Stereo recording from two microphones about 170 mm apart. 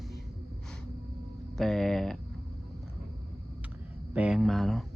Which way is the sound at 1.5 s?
Centre (ahead or behind).